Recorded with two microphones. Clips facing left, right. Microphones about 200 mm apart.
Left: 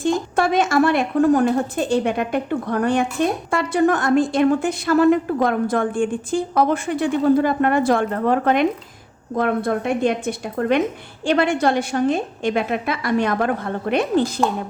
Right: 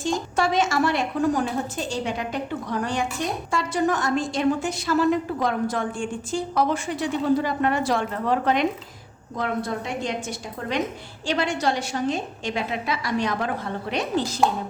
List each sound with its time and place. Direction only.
0.0 s a woman's voice: 55° left (ahead or behind)